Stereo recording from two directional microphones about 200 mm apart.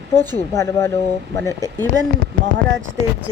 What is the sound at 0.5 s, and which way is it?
Speech, 15° left (ahead or behind).